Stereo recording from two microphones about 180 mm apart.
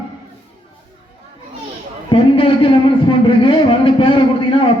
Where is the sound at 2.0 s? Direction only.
30° left (ahead or behind).